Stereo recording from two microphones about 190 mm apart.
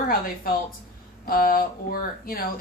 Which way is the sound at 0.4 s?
50° left (ahead or behind).